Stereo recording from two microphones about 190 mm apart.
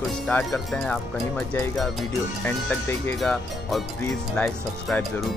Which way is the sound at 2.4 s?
10° left (ahead or behind).